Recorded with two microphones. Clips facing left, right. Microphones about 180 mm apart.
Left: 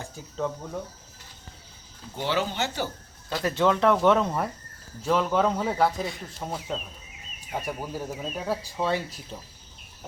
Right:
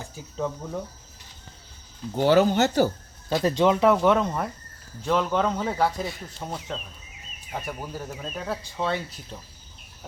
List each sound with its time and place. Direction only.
0.3 s speech: centre (ahead or behind)
2.1 s speech: 45° right (ahead or behind)
3.3 s speech: 20° right (ahead or behind)
3.9 s speech: centre (ahead or behind)